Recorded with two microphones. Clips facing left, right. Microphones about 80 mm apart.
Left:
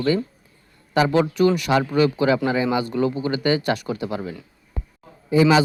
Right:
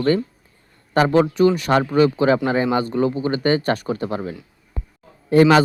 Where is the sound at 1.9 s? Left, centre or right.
Right.